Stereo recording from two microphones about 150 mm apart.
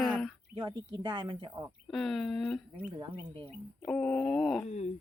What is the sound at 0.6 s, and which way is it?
Speech, 30° right (ahead or behind).